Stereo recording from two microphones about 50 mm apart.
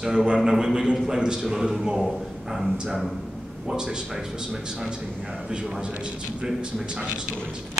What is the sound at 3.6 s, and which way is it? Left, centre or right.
A man's voice, centre.